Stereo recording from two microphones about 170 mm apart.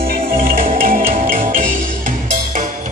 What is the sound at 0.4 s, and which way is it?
Music, 55° right (ahead or behind).